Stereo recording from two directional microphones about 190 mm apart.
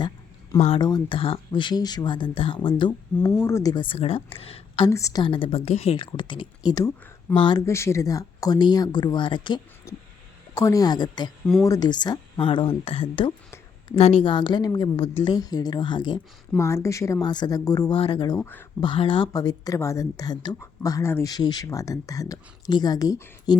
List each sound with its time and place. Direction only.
0.8 s a woman's voice: 20° left (ahead or behind)
4.9 s a woman's voice: 15° left (ahead or behind)
18.3 s speech: 10° left (ahead or behind)
18.8 s a woman's voice: 25° left (ahead or behind)